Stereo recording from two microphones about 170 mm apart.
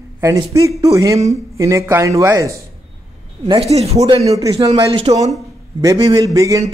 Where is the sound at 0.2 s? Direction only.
20° right (ahead or behind).